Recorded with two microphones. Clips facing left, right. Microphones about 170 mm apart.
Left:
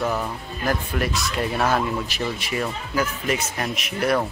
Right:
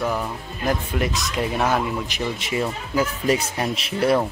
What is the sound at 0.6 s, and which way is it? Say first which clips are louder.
Speech: right 1 dB; 20° right (ahead or behind).